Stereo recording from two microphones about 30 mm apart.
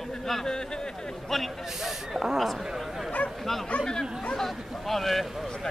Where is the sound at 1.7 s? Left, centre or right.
Centre.